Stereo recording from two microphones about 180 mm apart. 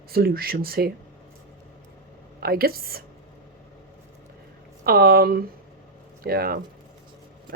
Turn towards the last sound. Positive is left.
turn(degrees=-55)  # may be behind; listen again after turning